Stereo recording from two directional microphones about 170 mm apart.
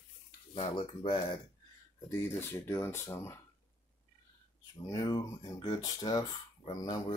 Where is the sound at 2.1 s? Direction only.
15° left (ahead or behind).